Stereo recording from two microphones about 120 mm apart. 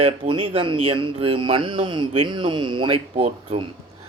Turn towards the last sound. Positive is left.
turn(degrees=-60)  # may be behind; listen again after turning